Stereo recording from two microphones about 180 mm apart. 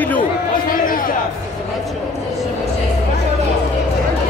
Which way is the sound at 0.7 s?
50° left (ahead or behind).